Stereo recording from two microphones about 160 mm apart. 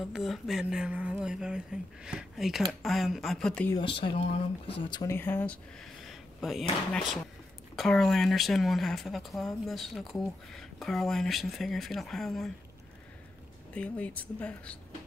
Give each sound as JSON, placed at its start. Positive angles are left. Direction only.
{"t": 0.1, "sound": "speech", "side_deg": 0}
{"t": 3.7, "sound": "speech", "side_deg": 30}
{"t": 5.1, "sound": "speech", "side_deg": 15}
{"t": 6.0, "sound": "speech", "side_deg": 0}
{"t": 13.7, "sound": "speech", "side_deg": 10}